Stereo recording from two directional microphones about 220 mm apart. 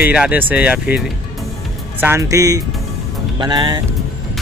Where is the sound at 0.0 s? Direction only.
5° right (ahead or behind).